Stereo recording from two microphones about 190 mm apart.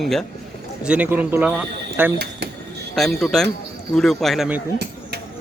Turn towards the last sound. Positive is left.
turn(degrees=0)  # may be behind; listen again after turning